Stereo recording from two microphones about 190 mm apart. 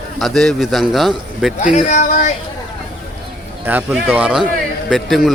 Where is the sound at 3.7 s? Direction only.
10° right (ahead or behind).